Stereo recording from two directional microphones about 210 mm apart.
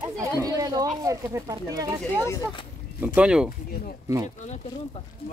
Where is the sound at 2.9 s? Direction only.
5° right (ahead or behind).